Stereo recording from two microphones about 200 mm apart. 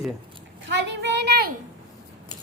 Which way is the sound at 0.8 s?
60° right (ahead or behind).